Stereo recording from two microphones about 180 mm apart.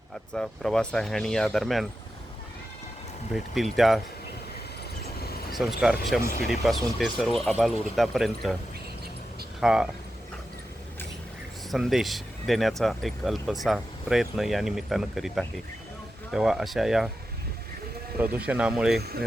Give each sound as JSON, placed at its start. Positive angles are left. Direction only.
{"t": 0.3, "sound": "speech", "side_deg": 5}
{"t": 3.3, "sound": "speech", "side_deg": 0}
{"t": 5.0, "sound": "a sound", "side_deg": 60}
{"t": 5.5, "sound": "speech", "side_deg": 0}
{"t": 9.6, "sound": "speech", "side_deg": -5}
{"t": 11.7, "sound": "speech", "side_deg": 0}
{"t": 18.2, "sound": "speech", "side_deg": -10}